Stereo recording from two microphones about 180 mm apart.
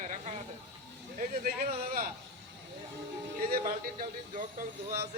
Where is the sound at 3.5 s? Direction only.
50° right (ahead or behind).